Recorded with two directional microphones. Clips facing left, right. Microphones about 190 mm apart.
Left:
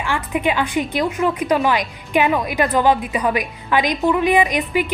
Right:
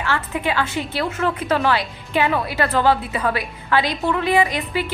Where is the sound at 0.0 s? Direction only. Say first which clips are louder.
Left 3 dB; 15° left (ahead or behind).